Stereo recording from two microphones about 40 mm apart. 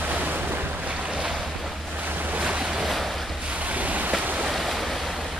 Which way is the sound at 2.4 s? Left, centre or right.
Right.